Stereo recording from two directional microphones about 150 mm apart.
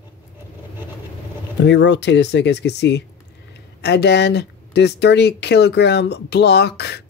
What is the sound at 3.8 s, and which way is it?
Speech, 90° left.